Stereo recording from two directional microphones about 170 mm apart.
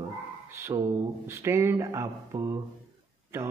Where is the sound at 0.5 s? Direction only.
15° right (ahead or behind).